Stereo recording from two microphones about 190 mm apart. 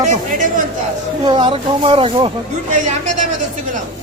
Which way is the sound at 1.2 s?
25° right (ahead or behind).